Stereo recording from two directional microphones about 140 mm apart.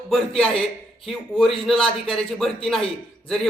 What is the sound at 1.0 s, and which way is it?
Speech, centre (ahead or behind).